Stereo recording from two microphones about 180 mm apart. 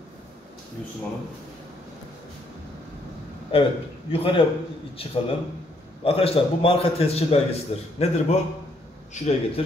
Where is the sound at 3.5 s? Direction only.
30° left (ahead or behind).